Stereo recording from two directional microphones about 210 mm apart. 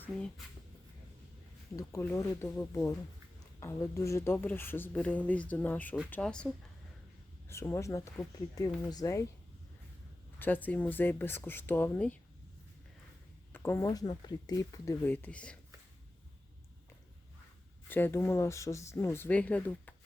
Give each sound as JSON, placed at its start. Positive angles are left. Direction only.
{"t": 1.7, "sound": "speech", "side_deg": 15}
{"t": 10.3, "sound": "speech", "side_deg": 10}
{"t": 13.5, "sound": "speech", "side_deg": 10}
{"t": 17.8, "sound": "speech", "side_deg": 10}